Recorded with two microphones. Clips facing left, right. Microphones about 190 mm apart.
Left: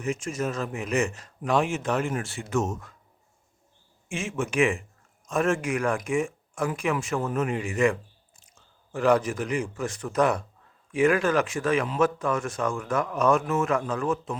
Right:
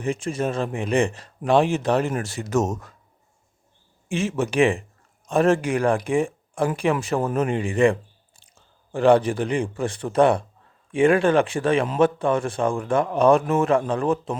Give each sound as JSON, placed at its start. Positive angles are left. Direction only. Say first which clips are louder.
{"t": 0.0, "sound": "speech", "louder": "right 4 dB", "side_deg": -30}
{"t": 4.1, "sound": "a man's voice", "louder": "right 6 dB", "side_deg": -35}